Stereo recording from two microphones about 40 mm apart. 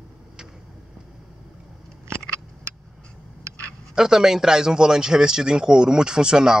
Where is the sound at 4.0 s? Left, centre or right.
Centre.